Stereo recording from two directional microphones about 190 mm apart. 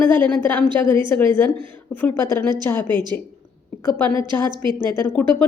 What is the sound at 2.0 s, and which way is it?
A woman's voice, 10° left (ahead or behind).